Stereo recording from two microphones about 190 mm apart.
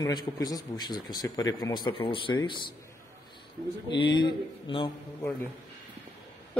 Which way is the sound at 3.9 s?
25° left (ahead or behind).